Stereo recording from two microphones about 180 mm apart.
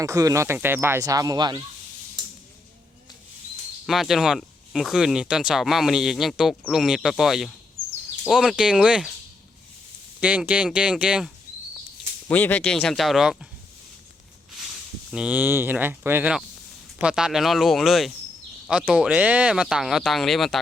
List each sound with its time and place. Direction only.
0.0 s speech: 20° right (ahead or behind)
3.8 s speech: centre (ahead or behind)
10.2 s speech: 10° right (ahead or behind)
12.3 s speech: 10° left (ahead or behind)
15.1 s speech: 5° right (ahead or behind)